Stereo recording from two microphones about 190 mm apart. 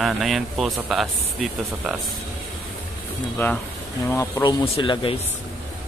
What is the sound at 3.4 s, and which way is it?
Speech, 10° left (ahead or behind).